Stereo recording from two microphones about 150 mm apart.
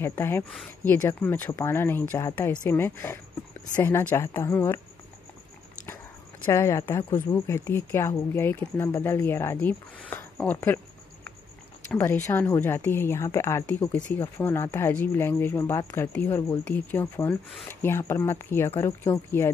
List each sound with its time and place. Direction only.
0.0 s speech: 15° left (ahead or behind)
6.4 s speech: 15° left (ahead or behind)
11.9 s speech: 15° left (ahead or behind)